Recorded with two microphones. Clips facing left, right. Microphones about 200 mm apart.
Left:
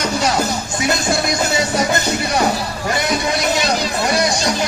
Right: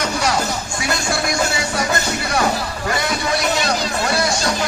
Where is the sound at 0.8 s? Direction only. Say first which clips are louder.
Left 4 dB; 20° left (ahead or behind).